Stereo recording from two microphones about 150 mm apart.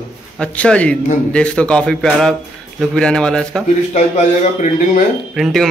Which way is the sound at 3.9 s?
55° left (ahead or behind).